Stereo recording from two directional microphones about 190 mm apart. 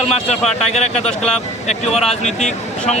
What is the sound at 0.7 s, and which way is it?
Speech, 35° left (ahead or behind).